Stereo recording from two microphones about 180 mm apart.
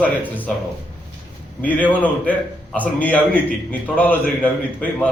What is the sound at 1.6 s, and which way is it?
A man's voice, 10° left (ahead or behind).